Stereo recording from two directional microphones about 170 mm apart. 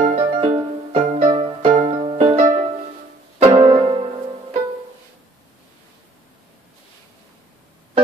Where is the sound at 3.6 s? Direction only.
30° right (ahead or behind).